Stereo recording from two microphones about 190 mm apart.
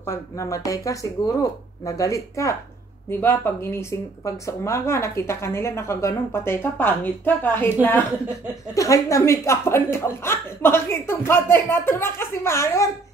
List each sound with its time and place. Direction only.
0.0 s speech: 15° left (ahead or behind)
8.7 s speech: 15° left (ahead or behind)